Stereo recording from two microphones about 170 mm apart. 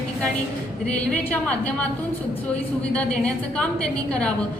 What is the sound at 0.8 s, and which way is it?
A woman's voice, 5° left (ahead or behind).